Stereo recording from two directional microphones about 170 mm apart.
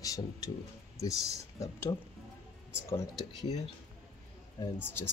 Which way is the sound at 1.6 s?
15° left (ahead or behind).